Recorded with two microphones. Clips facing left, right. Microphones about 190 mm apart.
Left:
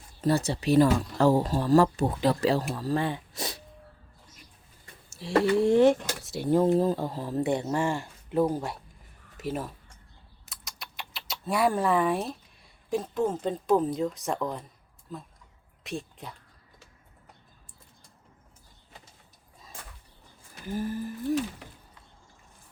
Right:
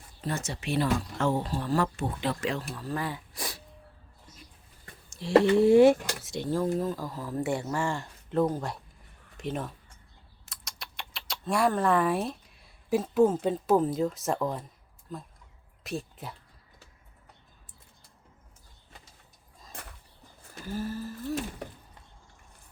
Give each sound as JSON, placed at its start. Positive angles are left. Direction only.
{"t": 0.2, "sound": "speech", "side_deg": 35}
{"t": 5.0, "sound": "speech", "side_deg": 5}
{"t": 6.7, "sound": "speech", "side_deg": 30}
{"t": 20.7, "sound": "humming", "side_deg": 15}